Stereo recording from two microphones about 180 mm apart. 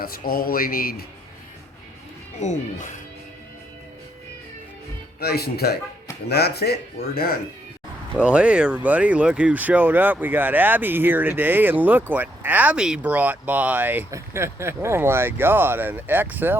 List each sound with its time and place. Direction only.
0.0 s speech: 55° left (ahead or behind)
2.4 s speech: 40° left (ahead or behind)
5.2 s speech: 60° left (ahead or behind)
8.2 s speech: 5° right (ahead or behind)